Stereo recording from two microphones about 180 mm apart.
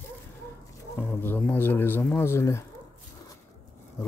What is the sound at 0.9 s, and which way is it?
Speech, 15° left (ahead or behind).